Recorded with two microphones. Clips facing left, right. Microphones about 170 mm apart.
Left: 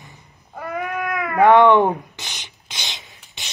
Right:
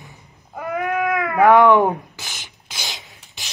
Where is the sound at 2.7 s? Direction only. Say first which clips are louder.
Right 2 dB; centre (ahead or behind).